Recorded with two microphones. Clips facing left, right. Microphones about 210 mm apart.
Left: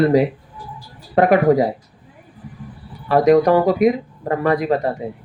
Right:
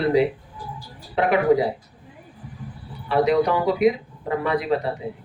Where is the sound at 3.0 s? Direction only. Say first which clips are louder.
Left 6 dB; 45° left (ahead or behind).